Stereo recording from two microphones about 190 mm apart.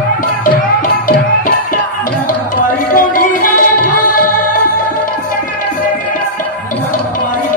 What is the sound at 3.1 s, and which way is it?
Music, 45° left (ahead or behind).